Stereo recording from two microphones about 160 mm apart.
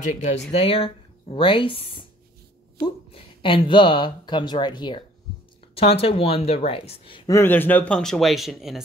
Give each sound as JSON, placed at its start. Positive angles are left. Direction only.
{"t": 0.0, "sound": "speech", "side_deg": 50}
{"t": 0.5, "sound": "speech", "side_deg": 40}
{"t": 5.8, "sound": "speech", "side_deg": 35}
{"t": 7.2, "sound": "speech", "side_deg": 15}